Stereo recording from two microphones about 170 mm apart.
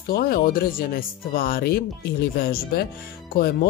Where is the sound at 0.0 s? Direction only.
60° left (ahead or behind).